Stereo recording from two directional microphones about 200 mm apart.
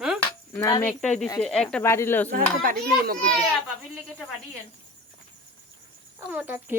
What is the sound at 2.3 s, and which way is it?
Speech, 45° right (ahead or behind).